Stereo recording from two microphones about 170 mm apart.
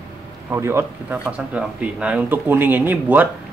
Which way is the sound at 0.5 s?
15° right (ahead or behind).